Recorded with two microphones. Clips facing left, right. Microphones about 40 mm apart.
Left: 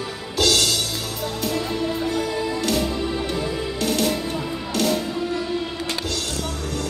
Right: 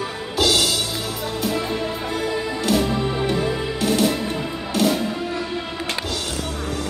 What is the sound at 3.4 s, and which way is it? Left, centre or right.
Music, centre.